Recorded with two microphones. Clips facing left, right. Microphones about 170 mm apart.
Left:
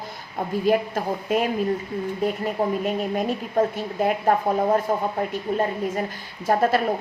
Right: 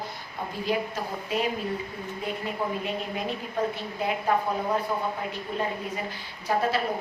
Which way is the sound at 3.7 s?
50° left (ahead or behind).